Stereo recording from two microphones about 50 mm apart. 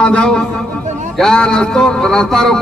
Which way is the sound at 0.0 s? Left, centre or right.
Centre.